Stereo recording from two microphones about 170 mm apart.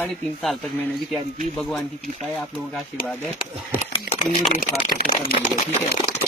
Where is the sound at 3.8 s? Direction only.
35° left (ahead or behind).